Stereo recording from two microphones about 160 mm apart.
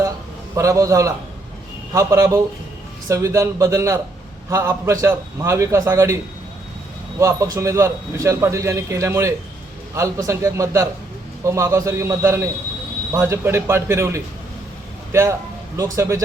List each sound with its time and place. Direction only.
0.5 s a man's voice: 20° right (ahead or behind)
7.2 s a man's voice: 20° right (ahead or behind)